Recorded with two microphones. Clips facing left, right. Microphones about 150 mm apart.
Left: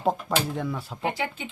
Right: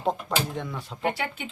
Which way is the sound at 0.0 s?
5° left (ahead or behind).